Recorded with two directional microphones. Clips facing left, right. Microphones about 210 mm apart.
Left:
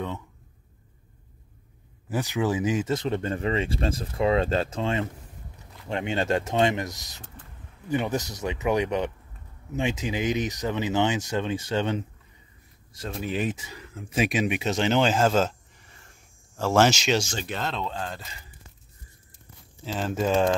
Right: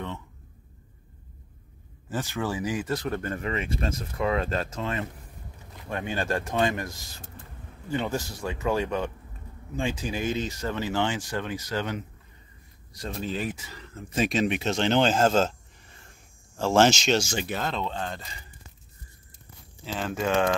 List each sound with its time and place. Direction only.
2.0 s speech: 15° left (ahead or behind)
13.2 s speech: 15° left (ahead or behind)
16.8 s speech: 5° left (ahead or behind)
17.2 s speech: 10° right (ahead or behind)
19.8 s speech: centre (ahead or behind)